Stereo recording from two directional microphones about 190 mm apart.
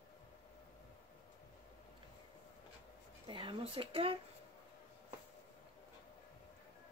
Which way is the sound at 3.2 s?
25° right (ahead or behind).